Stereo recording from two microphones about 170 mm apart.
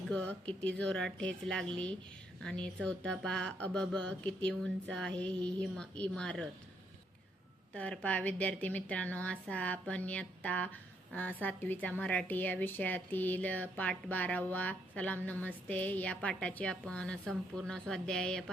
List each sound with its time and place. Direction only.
0.1 s a woman's voice: 5° left (ahead or behind)
7.7 s a woman's voice: 5° left (ahead or behind)